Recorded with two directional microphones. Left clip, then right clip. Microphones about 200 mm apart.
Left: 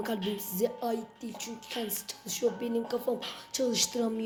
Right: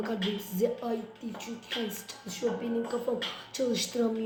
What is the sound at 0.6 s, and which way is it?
Speech, 55° left (ahead or behind).